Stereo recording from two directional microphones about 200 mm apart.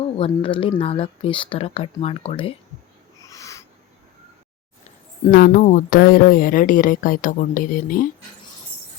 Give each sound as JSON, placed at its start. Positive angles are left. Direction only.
{"t": 0.2, "sound": "speech", "side_deg": 25}
{"t": 3.2, "sound": "owl", "side_deg": 15}
{"t": 5.3, "sound": "speech", "side_deg": 45}